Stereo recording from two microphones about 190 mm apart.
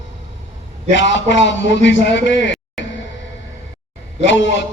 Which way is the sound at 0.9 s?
70° left (ahead or behind).